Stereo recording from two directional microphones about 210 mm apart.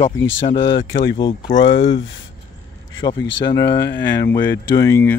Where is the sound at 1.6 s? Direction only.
60° left (ahead or behind).